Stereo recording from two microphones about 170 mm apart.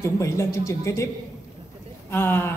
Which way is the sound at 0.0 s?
15° left (ahead or behind).